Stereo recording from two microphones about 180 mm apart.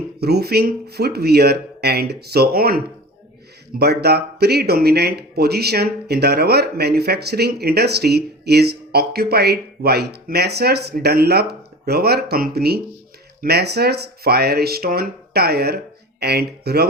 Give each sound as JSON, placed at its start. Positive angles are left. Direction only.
{"t": 0.2, "sound": "speech", "side_deg": -60}